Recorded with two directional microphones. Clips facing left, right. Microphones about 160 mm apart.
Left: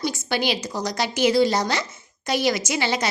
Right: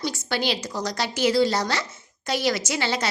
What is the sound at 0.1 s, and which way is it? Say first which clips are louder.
A woman's voice: left 2 dB; 15° left (ahead or behind).